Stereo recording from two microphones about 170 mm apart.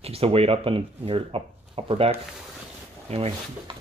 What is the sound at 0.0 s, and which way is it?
Speech, 35° right (ahead or behind).